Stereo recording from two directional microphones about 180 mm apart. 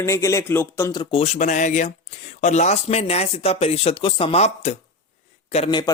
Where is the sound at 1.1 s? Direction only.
35° left (ahead or behind).